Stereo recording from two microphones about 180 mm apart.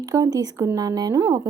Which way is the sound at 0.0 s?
20° right (ahead or behind).